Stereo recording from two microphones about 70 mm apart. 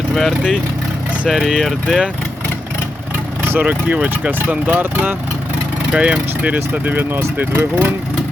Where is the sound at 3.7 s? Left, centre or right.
Right.